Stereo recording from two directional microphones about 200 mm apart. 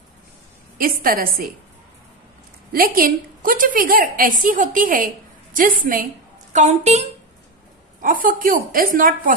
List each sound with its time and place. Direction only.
0.7 s a woman's voice: 45° right (ahead or behind)
2.7 s a woman's voice: 45° right (ahead or behind)